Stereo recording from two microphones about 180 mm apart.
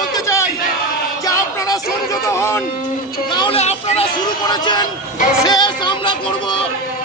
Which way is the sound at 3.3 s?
25° left (ahead or behind).